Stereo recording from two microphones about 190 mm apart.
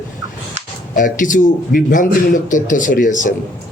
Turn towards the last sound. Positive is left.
turn(degrees=45)  # may be behind; listen again after turning